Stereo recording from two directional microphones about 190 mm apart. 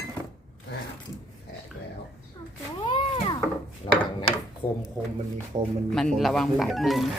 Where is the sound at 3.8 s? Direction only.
25° left (ahead or behind).